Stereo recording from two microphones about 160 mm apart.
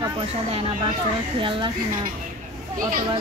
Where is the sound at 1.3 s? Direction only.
30° right (ahead or behind).